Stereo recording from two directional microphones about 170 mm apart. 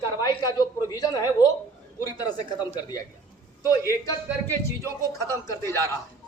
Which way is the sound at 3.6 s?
20° left (ahead or behind).